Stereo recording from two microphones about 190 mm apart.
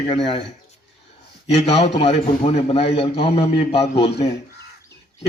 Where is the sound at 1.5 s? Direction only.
35° left (ahead or behind).